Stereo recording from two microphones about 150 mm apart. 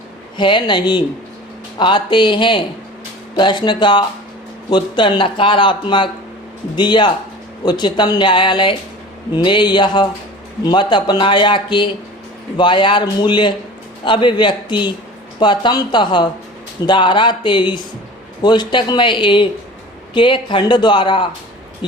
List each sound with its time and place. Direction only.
0.3 s speech: 30° left (ahead or behind)